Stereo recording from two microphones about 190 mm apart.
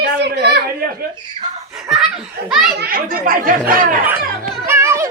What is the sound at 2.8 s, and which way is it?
Speech, 50° right (ahead or behind).